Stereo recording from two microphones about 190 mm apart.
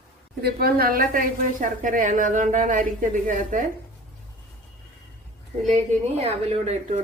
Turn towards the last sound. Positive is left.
turn(degrees=-35)  # may be behind; listen again after turning